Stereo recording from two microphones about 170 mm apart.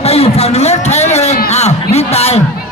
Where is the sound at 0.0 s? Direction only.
35° left (ahead or behind).